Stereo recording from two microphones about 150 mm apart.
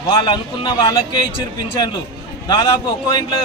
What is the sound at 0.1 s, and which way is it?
Speech, 30° left (ahead or behind).